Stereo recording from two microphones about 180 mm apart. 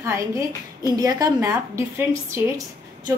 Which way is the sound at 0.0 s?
20° right (ahead or behind).